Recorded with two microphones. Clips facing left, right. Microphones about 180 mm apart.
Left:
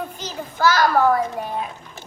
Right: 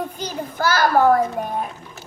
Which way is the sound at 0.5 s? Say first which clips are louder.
Even; 50° right (ahead or behind).